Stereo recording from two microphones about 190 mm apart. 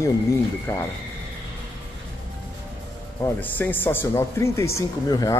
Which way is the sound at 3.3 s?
10° left (ahead or behind).